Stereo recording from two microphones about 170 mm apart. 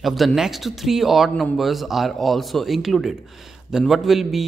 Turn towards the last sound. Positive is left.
turn(degrees=0)  # may be behind; listen again after turning